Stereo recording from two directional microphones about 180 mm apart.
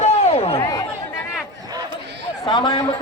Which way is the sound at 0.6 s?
20° left (ahead or behind).